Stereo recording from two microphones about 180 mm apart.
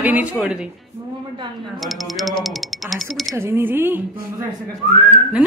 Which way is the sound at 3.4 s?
10° right (ahead or behind).